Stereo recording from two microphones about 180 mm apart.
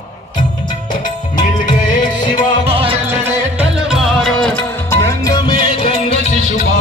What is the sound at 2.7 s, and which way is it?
Music, 30° right (ahead or behind).